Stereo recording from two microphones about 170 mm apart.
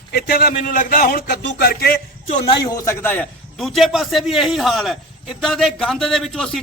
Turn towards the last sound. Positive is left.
turn(degrees=0)  # may be behind; listen again after turning